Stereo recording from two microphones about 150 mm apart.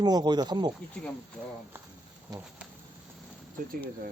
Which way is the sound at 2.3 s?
25° right (ahead or behind).